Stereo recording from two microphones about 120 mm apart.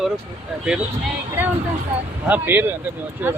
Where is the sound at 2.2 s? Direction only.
15° right (ahead or behind).